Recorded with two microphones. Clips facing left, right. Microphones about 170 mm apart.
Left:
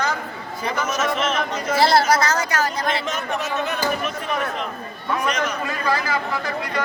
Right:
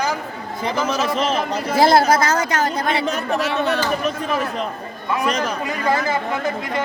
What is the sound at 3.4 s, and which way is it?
Speech, 80° right.